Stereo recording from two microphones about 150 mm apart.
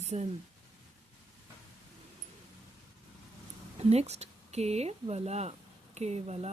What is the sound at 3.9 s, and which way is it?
Speech, 45° right (ahead or behind).